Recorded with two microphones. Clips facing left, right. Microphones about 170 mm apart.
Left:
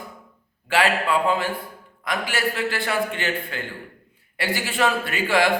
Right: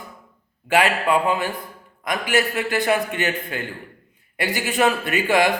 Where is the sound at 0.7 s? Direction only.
20° right (ahead or behind).